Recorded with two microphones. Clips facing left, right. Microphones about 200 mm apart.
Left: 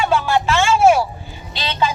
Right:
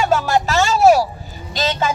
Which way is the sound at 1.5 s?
45° right (ahead or behind).